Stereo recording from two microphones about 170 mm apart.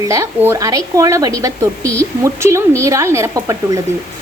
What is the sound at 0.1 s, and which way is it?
A woman's voice, 15° right (ahead or behind).